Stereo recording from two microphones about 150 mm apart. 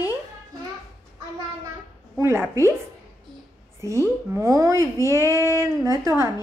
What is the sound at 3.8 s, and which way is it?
Speech, 20° right (ahead or behind).